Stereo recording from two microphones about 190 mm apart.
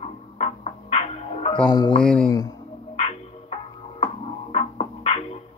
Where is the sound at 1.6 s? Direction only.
25° left (ahead or behind).